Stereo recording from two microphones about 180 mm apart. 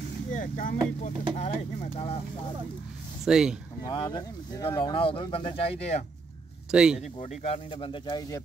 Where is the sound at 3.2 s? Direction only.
5° right (ahead or behind).